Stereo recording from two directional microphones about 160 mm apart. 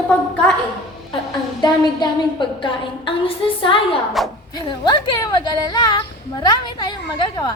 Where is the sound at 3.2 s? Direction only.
35° left (ahead or behind).